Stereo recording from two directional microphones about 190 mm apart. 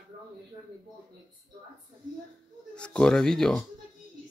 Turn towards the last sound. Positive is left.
turn(degrees=5)  # may be behind; listen again after turning